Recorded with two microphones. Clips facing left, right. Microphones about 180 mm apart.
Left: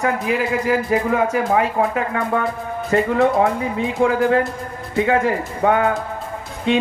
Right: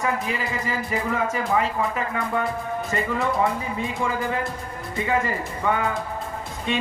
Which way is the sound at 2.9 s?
90° left.